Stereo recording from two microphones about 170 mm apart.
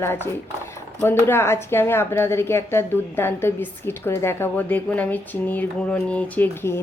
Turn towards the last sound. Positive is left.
turn(degrees=10)  # may be behind; listen again after turning